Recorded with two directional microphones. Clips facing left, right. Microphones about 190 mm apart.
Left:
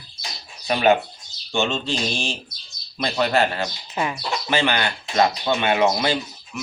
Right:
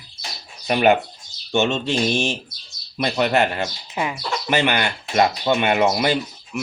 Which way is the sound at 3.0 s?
20° right (ahead or behind).